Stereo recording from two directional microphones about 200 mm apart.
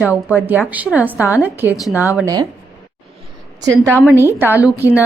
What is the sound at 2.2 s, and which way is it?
Speech, 20° right (ahead or behind).